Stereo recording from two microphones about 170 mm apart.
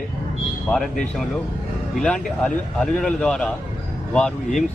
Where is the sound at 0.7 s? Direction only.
5° left (ahead or behind).